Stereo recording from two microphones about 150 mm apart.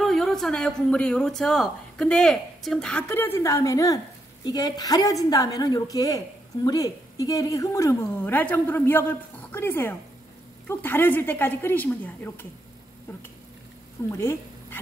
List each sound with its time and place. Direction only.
0.0 s speech: 5° left (ahead or behind)
3.1 s a woman's voice: 15° left (ahead or behind)
14.1 s speech: 20° left (ahead or behind)